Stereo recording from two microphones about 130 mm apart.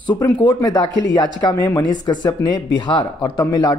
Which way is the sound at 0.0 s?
35° left (ahead or behind).